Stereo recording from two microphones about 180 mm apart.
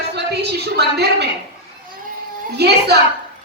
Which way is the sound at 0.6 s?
65° right (ahead or behind).